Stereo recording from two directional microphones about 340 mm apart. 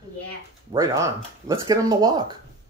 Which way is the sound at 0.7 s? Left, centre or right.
Centre.